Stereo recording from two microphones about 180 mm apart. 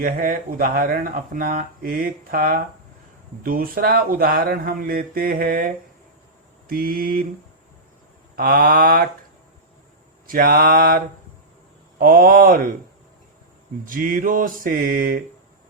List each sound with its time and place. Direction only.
0.0 s speech: 55° right (ahead or behind)
8.4 s speech: 55° right (ahead or behind)
10.2 s speech: 55° right (ahead or behind)
13.8 s speech: 50° right (ahead or behind)